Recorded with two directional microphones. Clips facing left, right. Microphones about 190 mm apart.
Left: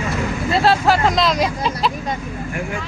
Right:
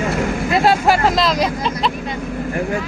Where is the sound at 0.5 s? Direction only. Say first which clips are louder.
Right 1 dB; 15° right (ahead or behind).